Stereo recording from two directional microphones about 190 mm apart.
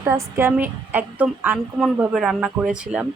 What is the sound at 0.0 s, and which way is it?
A woman's voice, 15° right (ahead or behind).